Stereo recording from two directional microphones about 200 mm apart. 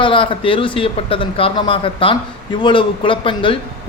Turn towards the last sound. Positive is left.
turn(degrees=25)  # may be behind; listen again after turning